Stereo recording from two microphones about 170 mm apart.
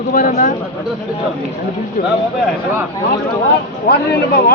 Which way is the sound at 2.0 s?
55° left (ahead or behind).